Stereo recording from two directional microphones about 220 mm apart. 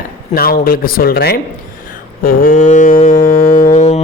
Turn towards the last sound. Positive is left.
turn(degrees=30)  # may be behind; listen again after turning